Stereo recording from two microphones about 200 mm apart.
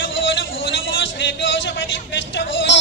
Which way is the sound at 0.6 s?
65° left (ahead or behind).